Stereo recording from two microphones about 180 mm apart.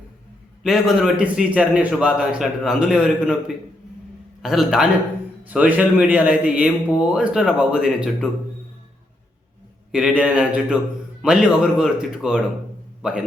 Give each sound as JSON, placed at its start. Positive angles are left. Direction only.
{"t": 0.6, "sound": "a man's voice", "side_deg": 0}
{"t": 9.9, "sound": "a man's voice", "side_deg": -5}